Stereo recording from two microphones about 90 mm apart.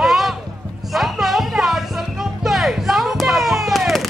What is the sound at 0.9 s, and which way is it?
Music, centre (ahead or behind).